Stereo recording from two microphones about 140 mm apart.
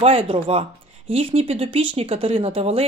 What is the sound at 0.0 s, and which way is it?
Speech, 45° right (ahead or behind).